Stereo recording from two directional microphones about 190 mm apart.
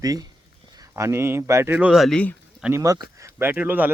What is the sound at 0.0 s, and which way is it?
Speech, 20° right (ahead or behind).